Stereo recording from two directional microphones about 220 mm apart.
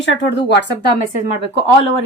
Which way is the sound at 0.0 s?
55° left (ahead or behind).